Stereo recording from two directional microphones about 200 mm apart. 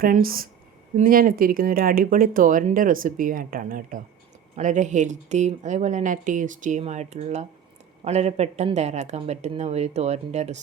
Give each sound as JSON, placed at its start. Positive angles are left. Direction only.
{"t": 0.0, "sound": "speech", "side_deg": -45}